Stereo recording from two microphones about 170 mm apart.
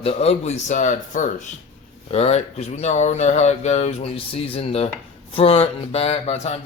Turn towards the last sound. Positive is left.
turn(degrees=35)  # may be behind; listen again after turning